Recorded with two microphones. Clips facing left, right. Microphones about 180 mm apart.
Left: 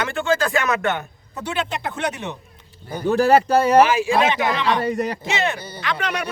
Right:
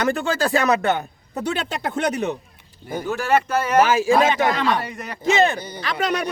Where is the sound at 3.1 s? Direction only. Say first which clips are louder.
Left 5 dB; 35° left (ahead or behind).